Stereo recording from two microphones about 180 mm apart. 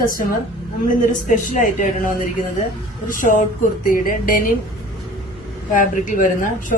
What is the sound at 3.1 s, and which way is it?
Speech, 45° left (ahead or behind).